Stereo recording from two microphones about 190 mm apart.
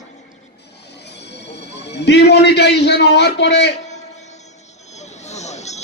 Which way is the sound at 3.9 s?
35° left (ahead or behind).